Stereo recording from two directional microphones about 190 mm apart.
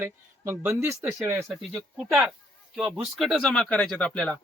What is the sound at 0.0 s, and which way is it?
Speech, 10° right (ahead or behind).